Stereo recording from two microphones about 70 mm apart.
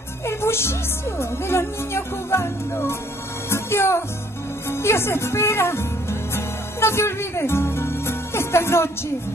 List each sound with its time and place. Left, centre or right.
0.3 s speech: left
6.3 s music: left